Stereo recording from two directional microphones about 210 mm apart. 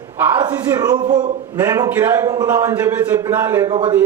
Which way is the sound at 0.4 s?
15° right (ahead or behind).